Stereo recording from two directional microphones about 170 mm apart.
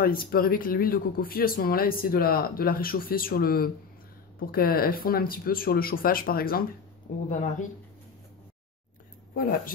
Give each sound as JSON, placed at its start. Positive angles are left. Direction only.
{"t": 0.0, "sound": "speech", "side_deg": 60}
{"t": 7.2, "sound": "speech", "side_deg": 45}